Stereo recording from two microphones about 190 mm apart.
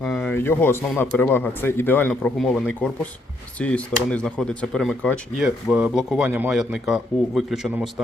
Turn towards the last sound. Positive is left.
turn(degrees=0)  # may be behind; listen again after turning